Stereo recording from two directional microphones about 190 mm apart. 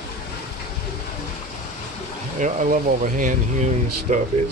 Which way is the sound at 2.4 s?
40° right (ahead or behind).